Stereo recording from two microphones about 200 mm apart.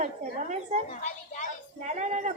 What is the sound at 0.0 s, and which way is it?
Speech, 35° right (ahead or behind).